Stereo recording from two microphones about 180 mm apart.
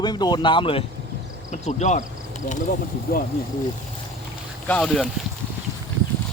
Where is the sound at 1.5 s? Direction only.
40° left (ahead or behind).